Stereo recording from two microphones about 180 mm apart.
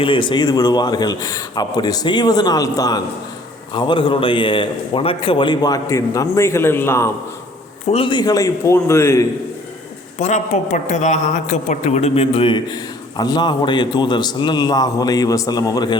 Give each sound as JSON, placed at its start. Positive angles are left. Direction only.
{"t": 0.0, "sound": "speech", "side_deg": 30}
{"t": 7.9, "sound": "speech", "side_deg": 25}
{"t": 10.2, "sound": "speech", "side_deg": 40}